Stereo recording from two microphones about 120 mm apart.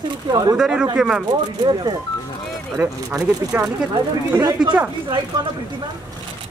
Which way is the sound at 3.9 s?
35° right (ahead or behind).